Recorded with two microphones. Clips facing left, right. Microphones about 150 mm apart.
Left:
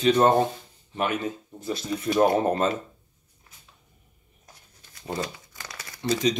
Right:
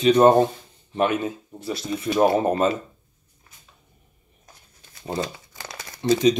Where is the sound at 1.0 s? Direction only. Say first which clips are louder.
Right 5 dB; 25° right (ahead or behind).